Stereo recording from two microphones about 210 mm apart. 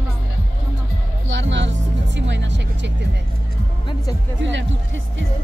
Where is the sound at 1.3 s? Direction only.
60° right (ahead or behind).